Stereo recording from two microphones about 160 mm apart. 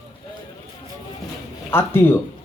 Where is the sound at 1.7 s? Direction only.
15° left (ahead or behind).